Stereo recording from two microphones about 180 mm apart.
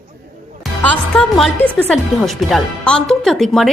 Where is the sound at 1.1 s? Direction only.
Centre (ahead or behind).